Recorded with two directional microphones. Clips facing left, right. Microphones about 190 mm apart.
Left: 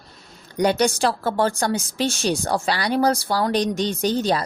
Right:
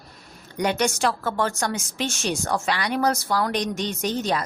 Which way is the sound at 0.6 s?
35° left (ahead or behind).